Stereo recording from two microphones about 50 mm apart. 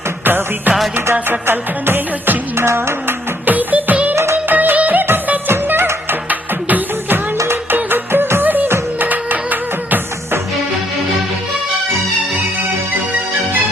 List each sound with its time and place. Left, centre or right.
0.3 s music: right
2.6 s music: right
3.4 s music: right
4.1 s music: right
4.4 s music: right
5.5 s music: right
6.2 s music: right
7.9 s music: right